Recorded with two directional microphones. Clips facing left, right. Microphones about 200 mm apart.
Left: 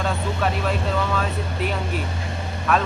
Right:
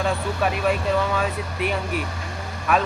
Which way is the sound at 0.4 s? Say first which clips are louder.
Right 1 dB; 10° right (ahead or behind).